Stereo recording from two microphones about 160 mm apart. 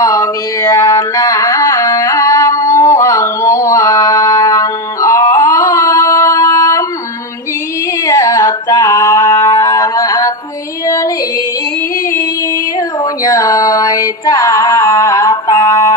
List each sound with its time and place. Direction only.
0.0 s carnatic music: 20° left (ahead or behind)
5.4 s singing: 20° left (ahead or behind)
8.1 s music: 20° left (ahead or behind)
13.2 s music: 20° left (ahead or behind)